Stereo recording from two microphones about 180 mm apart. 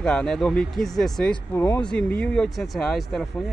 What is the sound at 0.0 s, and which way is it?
Speech, 5° left (ahead or behind).